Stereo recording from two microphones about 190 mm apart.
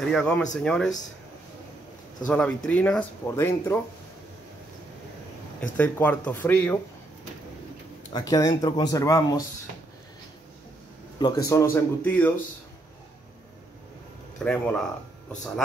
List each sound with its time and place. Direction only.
0.1 s speech: 5° left (ahead or behind)
2.2 s speech: 5° left (ahead or behind)
5.6 s speech: 10° left (ahead or behind)
8.1 s speech: 20° left (ahead or behind)
11.1 s speech: 20° left (ahead or behind)
14.4 s speech: 5° left (ahead or behind)